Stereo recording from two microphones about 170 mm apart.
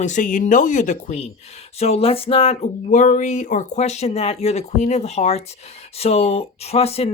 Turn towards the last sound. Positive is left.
turn(degrees=35)  # may be behind; listen again after turning